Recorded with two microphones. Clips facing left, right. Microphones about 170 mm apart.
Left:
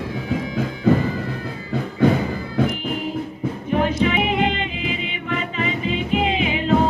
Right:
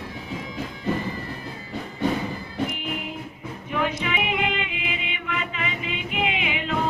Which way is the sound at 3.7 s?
35° left (ahead or behind).